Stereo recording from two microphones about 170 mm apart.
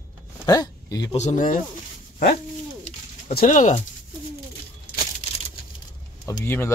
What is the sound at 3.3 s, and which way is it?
Speech, 55° left (ahead or behind).